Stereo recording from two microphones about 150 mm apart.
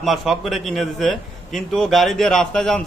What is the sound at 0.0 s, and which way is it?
A man's voice, centre (ahead or behind).